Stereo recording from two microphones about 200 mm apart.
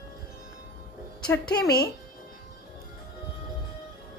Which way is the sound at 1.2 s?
5° left (ahead or behind).